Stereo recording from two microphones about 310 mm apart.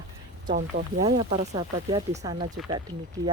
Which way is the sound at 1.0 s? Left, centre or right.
Centre.